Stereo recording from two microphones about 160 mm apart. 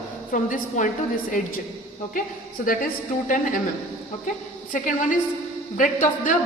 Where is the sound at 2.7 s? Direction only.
60° left (ahead or behind).